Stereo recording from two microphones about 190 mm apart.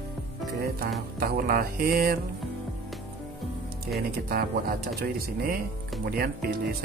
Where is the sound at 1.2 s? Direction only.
50° right (ahead or behind).